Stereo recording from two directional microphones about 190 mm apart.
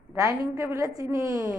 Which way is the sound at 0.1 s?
15° right (ahead or behind).